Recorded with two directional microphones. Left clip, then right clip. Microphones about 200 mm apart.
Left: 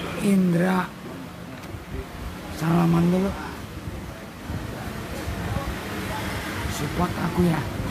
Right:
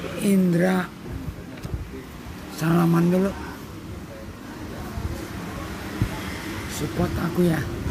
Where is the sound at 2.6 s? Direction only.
20° right (ahead or behind).